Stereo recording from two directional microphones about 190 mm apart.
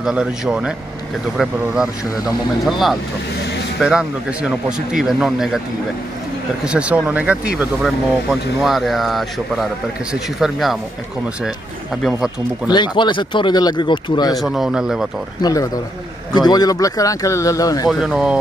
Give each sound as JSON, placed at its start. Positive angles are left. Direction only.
{"t": 0.0, "sound": "speech", "side_deg": -5}
{"t": 2.6, "sound": "speech", "side_deg": 0}
{"t": 6.6, "sound": "speech", "side_deg": -5}
{"t": 12.0, "sound": "speech", "side_deg": 0}
{"t": 12.7, "sound": "speech", "side_deg": 25}
{"t": 14.3, "sound": "speech", "side_deg": 0}
{"t": 15.4, "sound": "speech", "side_deg": 15}
{"t": 17.8, "sound": "speech", "side_deg": -5}